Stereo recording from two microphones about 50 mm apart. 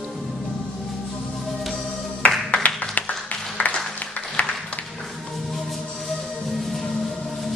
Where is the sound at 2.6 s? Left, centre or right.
Left.